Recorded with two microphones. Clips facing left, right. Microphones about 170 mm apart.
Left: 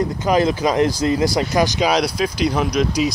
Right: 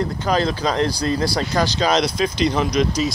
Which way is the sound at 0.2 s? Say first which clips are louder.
Left 4 dB; 20° left (ahead or behind).